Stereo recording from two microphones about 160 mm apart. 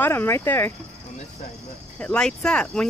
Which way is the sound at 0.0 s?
15° left (ahead or behind).